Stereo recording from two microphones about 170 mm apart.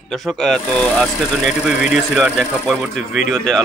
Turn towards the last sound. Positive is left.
turn(degrees=0)  # may be behind; listen again after turning